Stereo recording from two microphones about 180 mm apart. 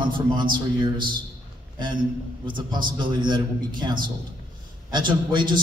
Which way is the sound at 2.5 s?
25° right (ahead or behind).